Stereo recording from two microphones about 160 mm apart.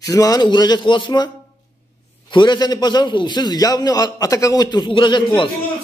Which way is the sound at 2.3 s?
30° left (ahead or behind).